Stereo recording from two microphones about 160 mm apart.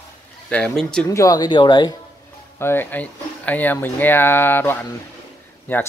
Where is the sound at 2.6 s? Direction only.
15° left (ahead or behind).